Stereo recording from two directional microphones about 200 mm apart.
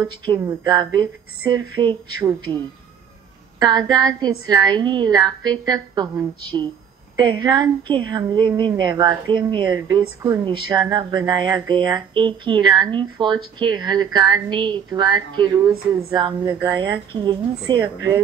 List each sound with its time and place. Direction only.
0.1 s a woman's voice: 25° right (ahead or behind)
3.5 s a woman's voice: 20° right (ahead or behind)